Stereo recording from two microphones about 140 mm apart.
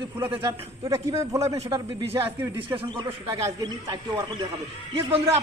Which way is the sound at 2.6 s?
35° right (ahead or behind).